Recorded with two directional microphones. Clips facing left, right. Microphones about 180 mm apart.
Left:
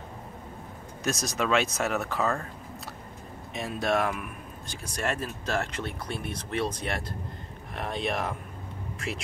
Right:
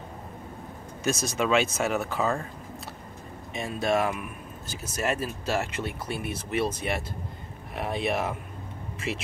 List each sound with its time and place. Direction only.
1.0 s speech: centre (ahead or behind)
3.5 s speech: centre (ahead or behind)